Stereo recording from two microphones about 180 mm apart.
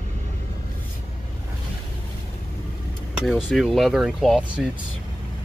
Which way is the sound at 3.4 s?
Centre (ahead or behind).